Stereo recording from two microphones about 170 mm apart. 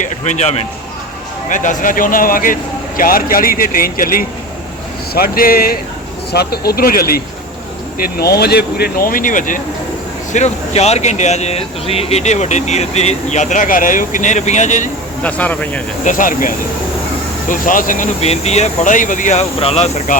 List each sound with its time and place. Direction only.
0.0 s speech: 45° left (ahead or behind)
10.3 s speech: 40° left (ahead or behind)
15.2 s speech: 10° left (ahead or behind)
16.0 s speech: 50° left (ahead or behind)